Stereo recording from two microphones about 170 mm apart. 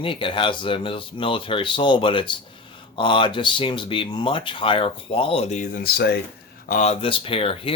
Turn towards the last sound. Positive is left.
turn(degrees=35)  # may be behind; listen again after turning